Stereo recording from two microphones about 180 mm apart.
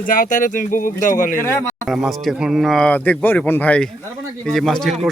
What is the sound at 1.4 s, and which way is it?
Speech, 15° left (ahead or behind).